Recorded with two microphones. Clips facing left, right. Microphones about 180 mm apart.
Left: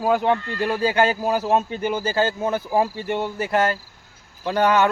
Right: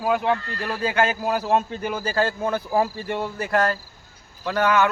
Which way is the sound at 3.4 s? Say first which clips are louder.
Even; 25° left (ahead or behind).